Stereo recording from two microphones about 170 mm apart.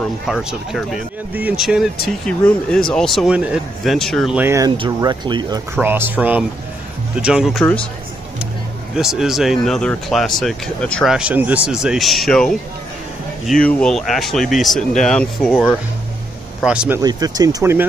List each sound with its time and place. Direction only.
0.3 s speech: 5° right (ahead or behind)
4.4 s speech: 15° right (ahead or behind)
5.8 s speech: 10° right (ahead or behind)
8.9 s speech: 5° right (ahead or behind)
17.0 s speech: 20° right (ahead or behind)